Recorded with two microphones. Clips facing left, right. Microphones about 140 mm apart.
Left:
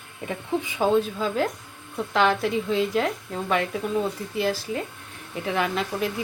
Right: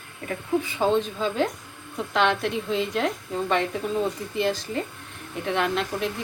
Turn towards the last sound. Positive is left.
turn(degrees=5)  # may be behind; listen again after turning